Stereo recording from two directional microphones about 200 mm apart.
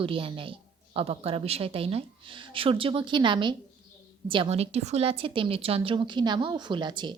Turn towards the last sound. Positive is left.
turn(degrees=-20)  # may be behind; listen again after turning